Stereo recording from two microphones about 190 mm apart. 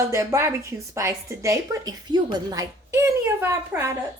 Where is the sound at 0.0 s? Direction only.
15° right (ahead or behind).